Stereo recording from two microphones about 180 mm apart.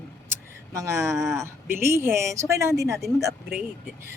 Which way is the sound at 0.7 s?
15° right (ahead or behind).